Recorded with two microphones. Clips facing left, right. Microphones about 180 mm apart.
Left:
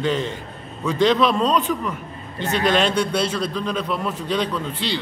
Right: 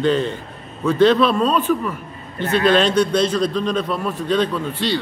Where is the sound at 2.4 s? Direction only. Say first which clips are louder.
Right 4 dB; 15° left (ahead or behind).